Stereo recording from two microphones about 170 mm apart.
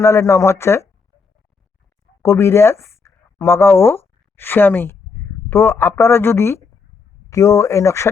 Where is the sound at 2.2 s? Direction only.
15° left (ahead or behind).